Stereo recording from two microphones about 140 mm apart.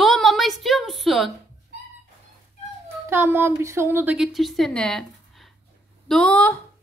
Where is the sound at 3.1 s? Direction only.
15° right (ahead or behind).